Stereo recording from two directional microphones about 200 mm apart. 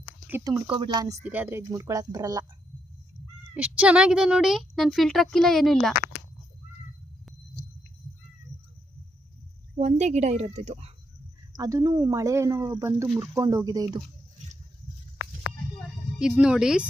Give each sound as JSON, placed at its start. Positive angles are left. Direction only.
{"t": 0.3, "sound": "speech", "side_deg": -15}
{"t": 3.5, "sound": "a child's voice", "side_deg": -5}
{"t": 9.7, "sound": "speech", "side_deg": -35}
{"t": 11.5, "sound": "speech", "side_deg": -20}
{"t": 16.1, "sound": "a child's voice", "side_deg": -5}